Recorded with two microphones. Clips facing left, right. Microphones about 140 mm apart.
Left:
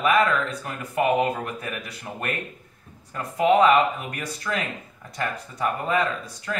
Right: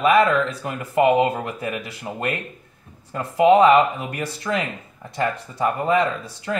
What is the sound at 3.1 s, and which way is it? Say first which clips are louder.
Speech: right 4 dB; 25° right (ahead or behind).